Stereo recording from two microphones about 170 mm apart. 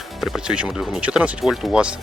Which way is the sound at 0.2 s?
Centre (ahead or behind).